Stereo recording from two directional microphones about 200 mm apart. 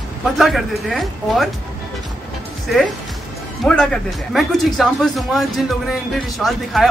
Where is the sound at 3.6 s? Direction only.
5° left (ahead or behind).